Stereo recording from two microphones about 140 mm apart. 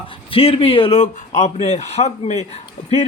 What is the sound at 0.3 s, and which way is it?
A man's voice, 40° left (ahead or behind).